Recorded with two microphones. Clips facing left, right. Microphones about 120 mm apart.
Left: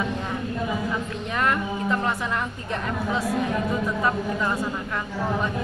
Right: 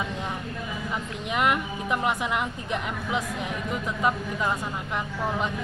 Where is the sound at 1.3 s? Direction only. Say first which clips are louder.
Even; 15° right (ahead or behind).